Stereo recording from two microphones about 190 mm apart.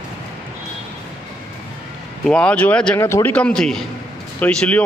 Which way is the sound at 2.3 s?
5° left (ahead or behind).